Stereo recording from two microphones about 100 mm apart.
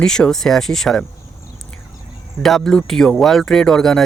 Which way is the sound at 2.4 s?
5° left (ahead or behind).